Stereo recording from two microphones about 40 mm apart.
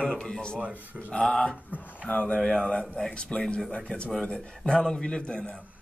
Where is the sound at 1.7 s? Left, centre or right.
Left.